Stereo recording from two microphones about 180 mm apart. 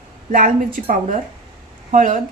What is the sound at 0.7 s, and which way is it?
A woman's voice, 50° right (ahead or behind).